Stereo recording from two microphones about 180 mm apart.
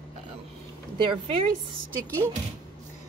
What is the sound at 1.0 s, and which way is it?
Speech, 25° right (ahead or behind).